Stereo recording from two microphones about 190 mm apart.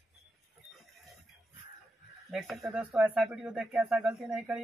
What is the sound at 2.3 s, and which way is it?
Speech, centre (ahead or behind).